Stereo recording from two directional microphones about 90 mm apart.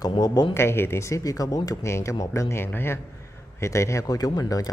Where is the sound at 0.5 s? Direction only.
30° left (ahead or behind).